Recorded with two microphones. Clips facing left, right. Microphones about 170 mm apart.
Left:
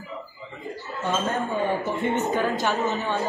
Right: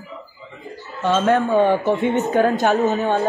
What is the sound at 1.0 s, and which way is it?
Speech, 80° right.